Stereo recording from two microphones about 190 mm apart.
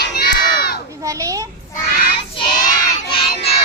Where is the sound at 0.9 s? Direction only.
15° right (ahead or behind).